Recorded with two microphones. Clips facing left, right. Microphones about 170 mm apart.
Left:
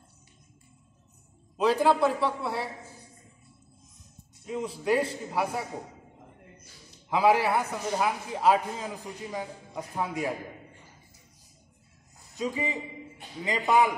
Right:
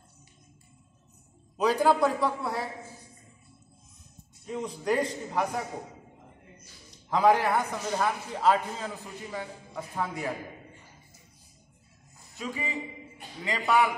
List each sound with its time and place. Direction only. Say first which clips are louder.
1.6 s a man's voice: even; centre (ahead or behind)
4.5 s a man's voice: left 2 dB; 5° left (ahead or behind)
7.1 s a man's voice: even; 5° left (ahead or behind)
12.4 s a man's voice: left 4 dB; 20° left (ahead or behind)